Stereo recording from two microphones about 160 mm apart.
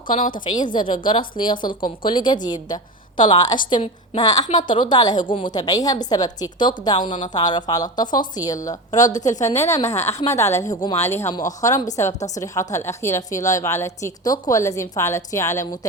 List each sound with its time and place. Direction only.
0.1 s a woman's voice: 55° left (ahead or behind)
0.6 s a woman's voice: 30° left (ahead or behind)
9.0 s a woman's voice: 50° left (ahead or behind)
10.3 s a woman's voice: 20° left (ahead or behind)